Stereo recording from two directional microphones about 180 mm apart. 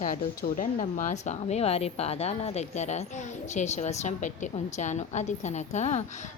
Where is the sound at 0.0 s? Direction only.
50° left (ahead or behind).